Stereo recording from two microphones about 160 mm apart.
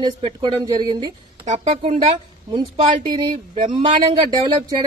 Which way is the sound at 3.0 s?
25° right (ahead or behind).